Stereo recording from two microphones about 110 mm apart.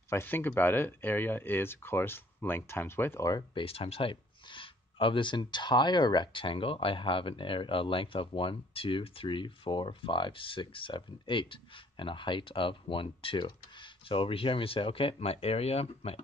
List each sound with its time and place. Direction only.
0.1 s speech: 20° left (ahead or behind)
3.5 s speech: 60° left (ahead or behind)